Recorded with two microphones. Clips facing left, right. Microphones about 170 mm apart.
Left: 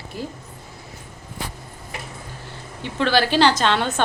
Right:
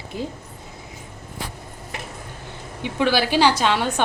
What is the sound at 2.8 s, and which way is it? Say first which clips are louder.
A woman's voice: even; 10° right (ahead or behind).